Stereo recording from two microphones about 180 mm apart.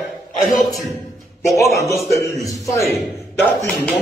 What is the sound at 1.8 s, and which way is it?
Speech, 15° left (ahead or behind).